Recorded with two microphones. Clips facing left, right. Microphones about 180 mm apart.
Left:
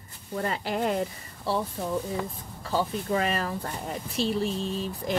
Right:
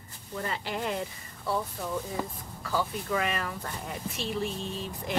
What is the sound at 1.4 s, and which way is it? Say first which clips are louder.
Speech: left 3 dB; 30° left (ahead or behind).